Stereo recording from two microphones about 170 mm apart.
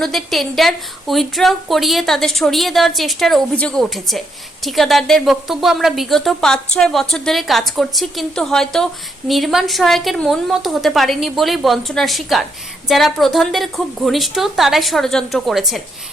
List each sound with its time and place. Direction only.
0.0 s a woman's voice: centre (ahead or behind)